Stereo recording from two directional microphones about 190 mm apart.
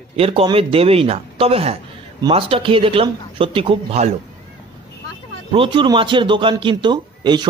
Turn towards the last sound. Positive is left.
turn(degrees=-25)  # may be behind; listen again after turning